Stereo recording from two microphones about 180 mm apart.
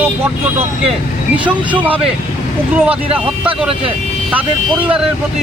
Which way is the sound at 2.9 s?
30° right (ahead or behind).